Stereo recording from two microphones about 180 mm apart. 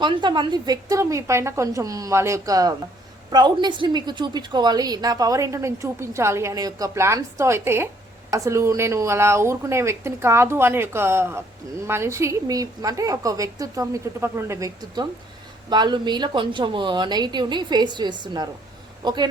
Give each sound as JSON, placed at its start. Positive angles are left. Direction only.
{"t": 0.0, "sound": "a woman's voice", "side_deg": -25}